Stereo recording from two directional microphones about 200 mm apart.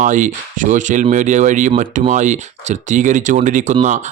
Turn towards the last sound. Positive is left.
turn(degrees=-35)  # may be behind; listen again after turning